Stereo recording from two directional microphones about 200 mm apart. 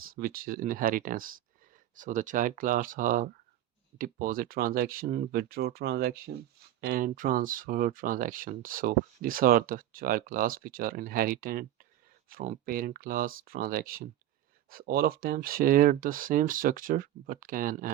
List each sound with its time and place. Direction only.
0.0 s speech: 45° right (ahead or behind)
5.4 s speech: 55° right (ahead or behind)